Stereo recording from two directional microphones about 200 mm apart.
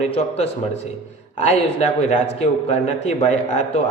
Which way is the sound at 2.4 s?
35° left (ahead or behind).